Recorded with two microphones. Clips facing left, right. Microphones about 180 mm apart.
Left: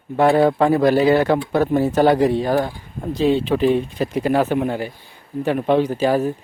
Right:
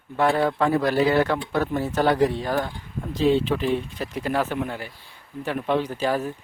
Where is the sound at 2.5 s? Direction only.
35° left (ahead or behind).